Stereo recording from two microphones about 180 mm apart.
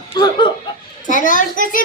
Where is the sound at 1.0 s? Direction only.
45° left (ahead or behind).